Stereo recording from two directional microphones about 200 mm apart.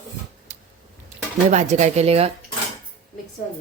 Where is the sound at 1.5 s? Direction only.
35° right (ahead or behind).